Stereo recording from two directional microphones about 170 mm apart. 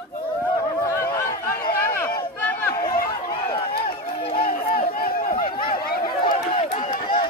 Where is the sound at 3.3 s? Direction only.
30° left (ahead or behind).